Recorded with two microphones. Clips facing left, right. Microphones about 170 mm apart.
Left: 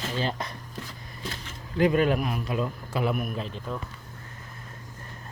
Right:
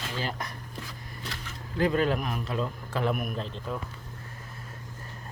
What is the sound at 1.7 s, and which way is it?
A man's voice, 15° left (ahead or behind).